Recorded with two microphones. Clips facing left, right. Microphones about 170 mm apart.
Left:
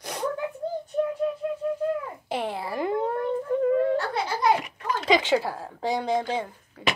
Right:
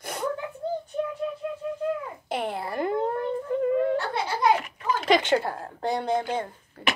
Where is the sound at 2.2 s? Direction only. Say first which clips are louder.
Right 1 dB; centre (ahead or behind).